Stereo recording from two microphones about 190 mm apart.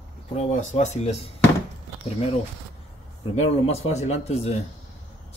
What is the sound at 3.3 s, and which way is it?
Speech, 35° left (ahead or behind).